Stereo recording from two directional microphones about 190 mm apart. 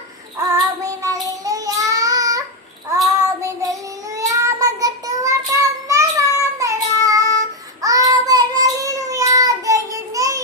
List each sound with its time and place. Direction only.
0.5 s child singing: 15° right (ahead or behind)